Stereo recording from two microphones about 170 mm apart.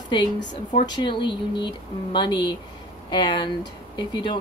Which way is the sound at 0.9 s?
30° left (ahead or behind).